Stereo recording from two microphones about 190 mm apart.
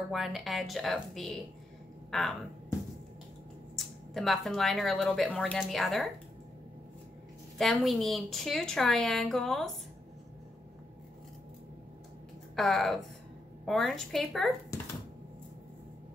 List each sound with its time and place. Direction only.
0.1 s speech: centre (ahead or behind)
3.7 s speech: centre (ahead or behind)
7.5 s speech: centre (ahead or behind)
12.5 s speech: centre (ahead or behind)
14.7 s speech: 15° left (ahead or behind)